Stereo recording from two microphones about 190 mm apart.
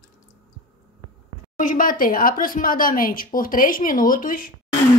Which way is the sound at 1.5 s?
45° left (ahead or behind).